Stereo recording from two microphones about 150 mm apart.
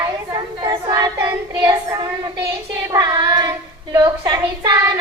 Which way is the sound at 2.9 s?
25° right (ahead or behind).